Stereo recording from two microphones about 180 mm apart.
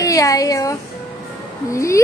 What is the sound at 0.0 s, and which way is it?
A woman's voice, 20° left (ahead or behind).